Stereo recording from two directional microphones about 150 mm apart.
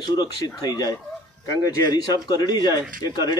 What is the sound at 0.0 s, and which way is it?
Speech, 30° left (ahead or behind).